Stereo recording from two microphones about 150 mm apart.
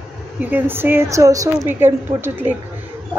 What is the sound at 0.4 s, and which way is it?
A woman's voice, 10° right (ahead or behind).